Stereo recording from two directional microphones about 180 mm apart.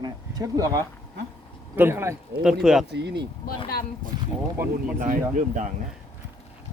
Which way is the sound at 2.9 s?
70° right (ahead or behind).